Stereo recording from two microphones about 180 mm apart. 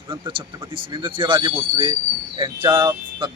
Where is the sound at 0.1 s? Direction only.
30° right (ahead or behind).